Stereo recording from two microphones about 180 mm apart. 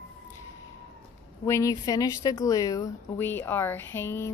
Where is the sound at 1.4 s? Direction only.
15° left (ahead or behind).